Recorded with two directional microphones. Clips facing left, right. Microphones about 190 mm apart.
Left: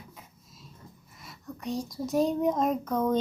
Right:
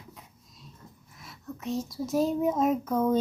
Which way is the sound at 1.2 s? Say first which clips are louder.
Right 1 dB; centre (ahead or behind).